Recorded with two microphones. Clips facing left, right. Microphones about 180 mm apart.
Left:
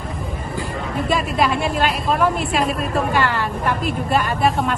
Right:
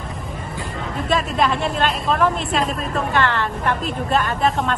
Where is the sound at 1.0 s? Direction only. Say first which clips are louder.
Even; 5° left (ahead or behind).